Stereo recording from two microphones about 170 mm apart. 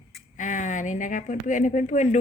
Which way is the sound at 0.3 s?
45° left (ahead or behind).